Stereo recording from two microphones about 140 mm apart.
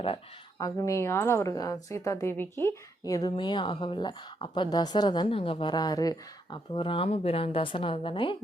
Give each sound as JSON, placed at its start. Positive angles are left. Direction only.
{"t": 0.6, "sound": "a woman's voice", "side_deg": 20}